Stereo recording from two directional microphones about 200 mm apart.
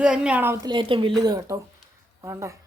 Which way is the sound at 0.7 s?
25° right (ahead or behind).